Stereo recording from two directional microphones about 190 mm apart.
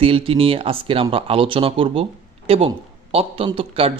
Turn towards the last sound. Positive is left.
turn(degrees=-30)  # may be behind; listen again after turning